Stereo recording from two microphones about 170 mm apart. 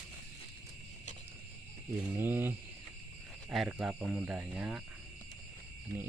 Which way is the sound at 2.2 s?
15° right (ahead or behind).